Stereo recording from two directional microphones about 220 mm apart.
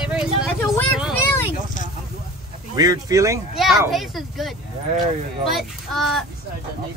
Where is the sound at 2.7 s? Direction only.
15° right (ahead or behind).